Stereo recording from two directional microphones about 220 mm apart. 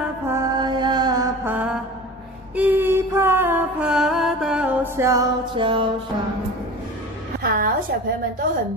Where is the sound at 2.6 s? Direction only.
10° right (ahead or behind).